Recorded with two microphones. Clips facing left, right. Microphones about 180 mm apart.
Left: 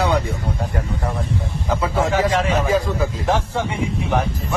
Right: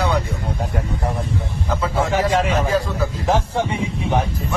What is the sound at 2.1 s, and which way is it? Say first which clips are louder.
Speech: right 2 dB; 15° right (ahead or behind).